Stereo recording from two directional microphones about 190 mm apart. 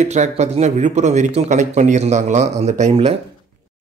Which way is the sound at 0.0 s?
35° right (ahead or behind).